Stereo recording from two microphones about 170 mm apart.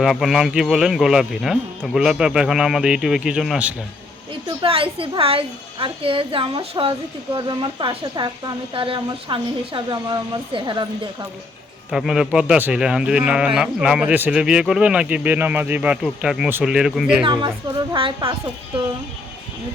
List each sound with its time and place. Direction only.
0.0 s speech: centre (ahead or behind)
4.6 s a woman's voice: 35° right (ahead or behind)
11.9 s speech: 5° right (ahead or behind)
17.2 s a woman's voice: 25° right (ahead or behind)